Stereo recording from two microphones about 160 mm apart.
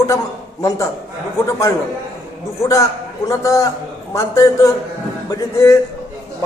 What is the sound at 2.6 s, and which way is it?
A man's voice, 20° left (ahead or behind).